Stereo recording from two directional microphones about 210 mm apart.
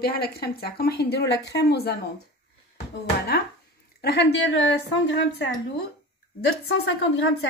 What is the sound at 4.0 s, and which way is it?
A woman's voice, 50° left (ahead or behind).